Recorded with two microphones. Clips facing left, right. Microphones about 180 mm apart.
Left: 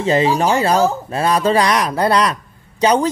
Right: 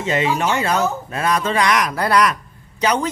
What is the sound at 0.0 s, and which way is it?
Speech, 35° left (ahead or behind).